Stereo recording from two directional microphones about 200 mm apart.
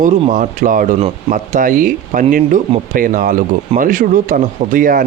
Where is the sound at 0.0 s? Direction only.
40° right (ahead or behind).